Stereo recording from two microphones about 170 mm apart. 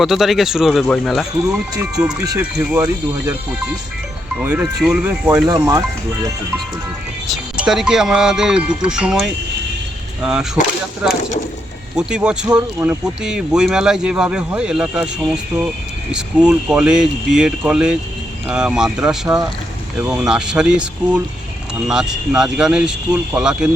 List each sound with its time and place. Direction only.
0.0 s speech: centre (ahead or behind)
2.4 s speech: 5° right (ahead or behind)
4.4 s speech: 10° right (ahead or behind)
5.5 s speech: 20° right (ahead or behind)
7.3 s speech: 5° right (ahead or behind)
11.9 s speech: 5° right (ahead or behind)